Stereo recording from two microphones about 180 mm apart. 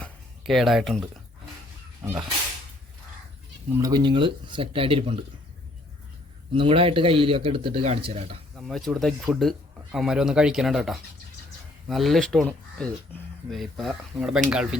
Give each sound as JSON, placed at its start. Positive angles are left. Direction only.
{"t": 0.0, "sound": "speech", "side_deg": 0}
{"t": 3.8, "sound": "speech", "side_deg": -20}
{"t": 6.5, "sound": "speech", "side_deg": -30}
{"t": 8.5, "sound": "speech", "side_deg": 0}